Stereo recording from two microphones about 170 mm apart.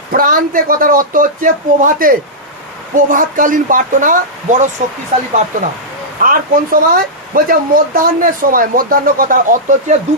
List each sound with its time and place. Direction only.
0.1 s speech: 55° right (ahead or behind)
6.2 s speech: 55° right (ahead or behind)